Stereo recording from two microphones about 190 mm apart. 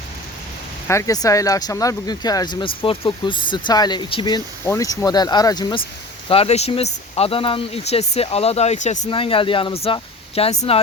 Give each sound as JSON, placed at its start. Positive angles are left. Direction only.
{"t": 0.9, "sound": "speech", "side_deg": 15}
{"t": 9.0, "sound": "speech", "side_deg": 30}